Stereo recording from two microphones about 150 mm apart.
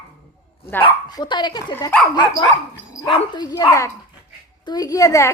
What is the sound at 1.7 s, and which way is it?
Speech, 10° left (ahead or behind).